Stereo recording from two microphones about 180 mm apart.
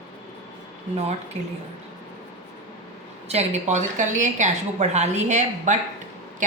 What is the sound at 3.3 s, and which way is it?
A woman's voice, 40° right (ahead or behind).